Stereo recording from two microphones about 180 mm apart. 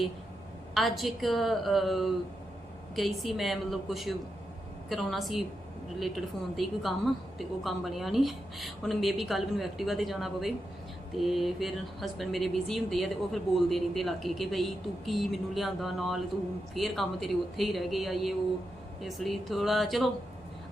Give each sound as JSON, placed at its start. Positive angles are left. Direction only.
{"t": 0.7, "sound": "speech", "side_deg": 0}